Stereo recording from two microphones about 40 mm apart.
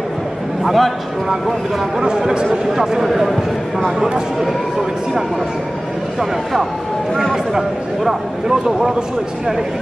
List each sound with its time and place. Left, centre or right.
0.7 s a man's voice: centre
2.0 s speech: centre
7.5 s speech: centre